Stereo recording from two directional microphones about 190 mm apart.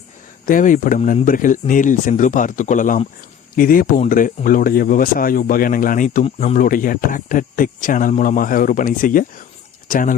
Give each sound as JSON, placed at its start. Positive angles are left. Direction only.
{"t": 0.4, "sound": "speech", "side_deg": 45}